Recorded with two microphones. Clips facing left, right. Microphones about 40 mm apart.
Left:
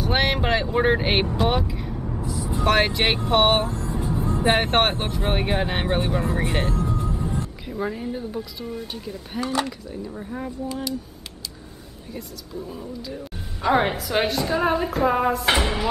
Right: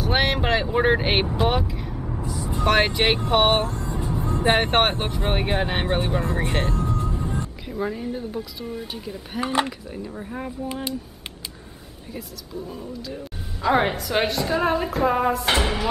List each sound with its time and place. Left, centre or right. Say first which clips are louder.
0.0 s vehicle: even; centre
2.5 s speech: even; centre
3.7 s vehicle: left 1 dB; centre
4.3 s speech: right 1 dB; centre
9.4 s speech: right 2 dB; right
10.1 s speech: even; centre
10.7 s speech: left 1 dB; right
12.1 s speech: even; centre